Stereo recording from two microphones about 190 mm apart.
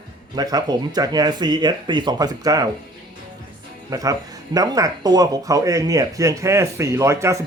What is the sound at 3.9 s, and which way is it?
Speech, 20° right (ahead or behind).